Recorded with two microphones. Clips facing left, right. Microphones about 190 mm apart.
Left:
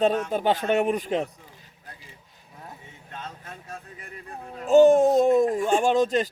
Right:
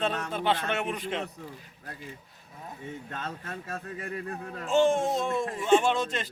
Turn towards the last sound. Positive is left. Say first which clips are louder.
# left 6 dB
turn(degrees=40)  # may be behind; listen again after turning